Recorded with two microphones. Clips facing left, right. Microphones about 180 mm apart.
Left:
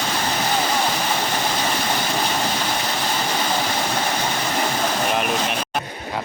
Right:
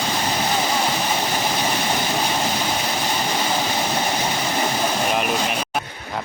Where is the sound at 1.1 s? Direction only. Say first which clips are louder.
Even; 10° right (ahead or behind).